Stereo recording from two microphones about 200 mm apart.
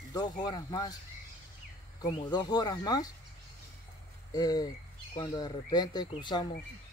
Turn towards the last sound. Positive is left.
turn(degrees=20)  # may be behind; listen again after turning